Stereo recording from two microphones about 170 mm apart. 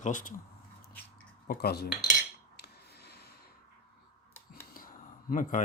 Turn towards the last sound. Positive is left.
turn(degrees=50)  # may be behind; listen again after turning